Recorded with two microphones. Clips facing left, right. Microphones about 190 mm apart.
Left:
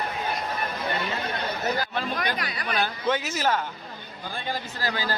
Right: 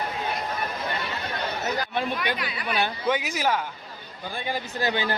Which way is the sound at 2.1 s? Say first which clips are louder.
Even; 40° left (ahead or behind).